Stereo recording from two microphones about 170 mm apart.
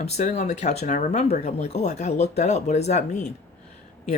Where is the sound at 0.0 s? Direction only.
45° left (ahead or behind).